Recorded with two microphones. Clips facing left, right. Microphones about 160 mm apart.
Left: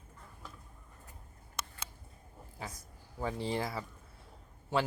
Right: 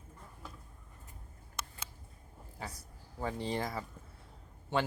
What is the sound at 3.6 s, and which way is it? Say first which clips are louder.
Speech: even; 5° left (ahead or behind).